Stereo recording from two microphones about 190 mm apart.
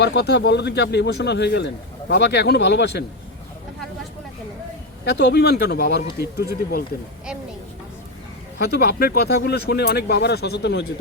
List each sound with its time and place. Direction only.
0.0 s speech: 65° left (ahead or behind)
5.0 s speech: 60° left (ahead or behind)
8.5 s speech: 55° left (ahead or behind)